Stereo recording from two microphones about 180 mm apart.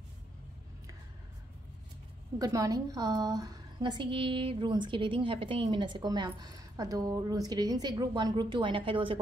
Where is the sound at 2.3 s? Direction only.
20° right (ahead or behind).